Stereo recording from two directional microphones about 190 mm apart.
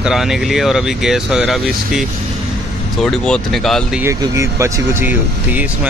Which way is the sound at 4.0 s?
15° right (ahead or behind).